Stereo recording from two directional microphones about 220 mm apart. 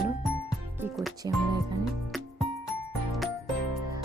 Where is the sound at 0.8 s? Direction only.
Centre (ahead or behind).